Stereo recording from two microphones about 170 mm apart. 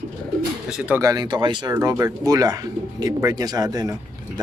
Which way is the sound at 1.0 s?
20° right (ahead or behind).